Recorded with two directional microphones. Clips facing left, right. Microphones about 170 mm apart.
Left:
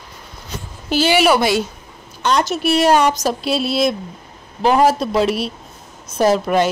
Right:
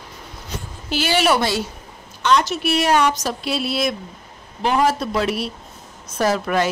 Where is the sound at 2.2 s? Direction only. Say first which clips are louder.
Left 1 dB; 40° left (ahead or behind).